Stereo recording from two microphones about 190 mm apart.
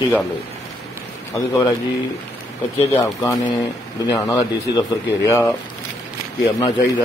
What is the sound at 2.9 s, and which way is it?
Speech, 15° left (ahead or behind).